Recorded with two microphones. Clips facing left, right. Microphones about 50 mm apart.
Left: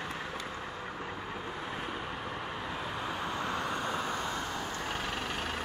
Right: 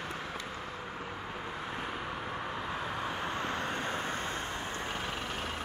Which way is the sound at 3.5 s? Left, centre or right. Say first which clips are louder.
Left 1 dB; right.